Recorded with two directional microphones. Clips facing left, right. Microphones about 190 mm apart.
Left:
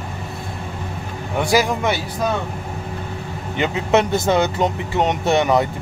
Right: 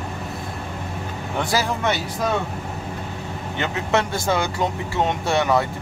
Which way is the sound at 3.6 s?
20° left (ahead or behind).